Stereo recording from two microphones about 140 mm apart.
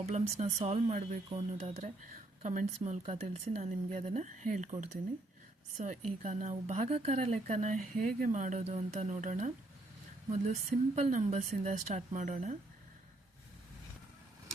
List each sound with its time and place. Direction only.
0.0 s speech: 55° right (ahead or behind)
2.4 s speech: 60° right (ahead or behind)